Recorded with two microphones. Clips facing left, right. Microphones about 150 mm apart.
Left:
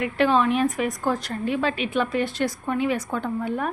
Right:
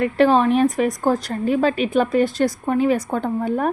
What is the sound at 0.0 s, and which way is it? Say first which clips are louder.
A woman's voice: right 5 dB; 35° right (ahead or behind).